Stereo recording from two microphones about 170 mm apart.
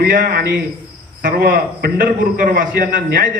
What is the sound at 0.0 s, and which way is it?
A man's voice, 60° right (ahead or behind).